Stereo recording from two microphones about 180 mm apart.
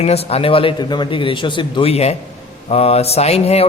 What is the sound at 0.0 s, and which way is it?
A man's voice, 35° left (ahead or behind).